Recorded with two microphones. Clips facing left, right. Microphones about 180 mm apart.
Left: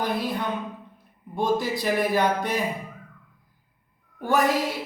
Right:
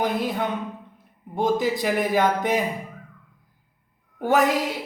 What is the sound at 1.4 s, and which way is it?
Speech, 20° right (ahead or behind).